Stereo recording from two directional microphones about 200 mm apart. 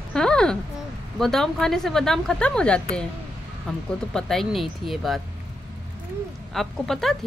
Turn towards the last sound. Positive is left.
turn(degrees=0)  # may be behind; listen again after turning